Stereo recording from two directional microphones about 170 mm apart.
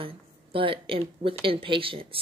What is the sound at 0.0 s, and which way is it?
Speech, 30° right (ahead or behind).